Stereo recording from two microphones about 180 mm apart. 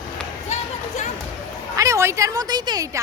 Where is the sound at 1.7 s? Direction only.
15° right (ahead or behind).